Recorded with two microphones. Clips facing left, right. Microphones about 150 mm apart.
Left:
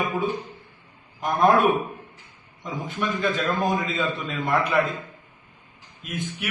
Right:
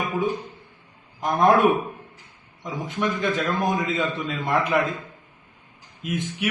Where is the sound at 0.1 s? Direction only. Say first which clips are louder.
Right 4 dB; centre (ahead or behind).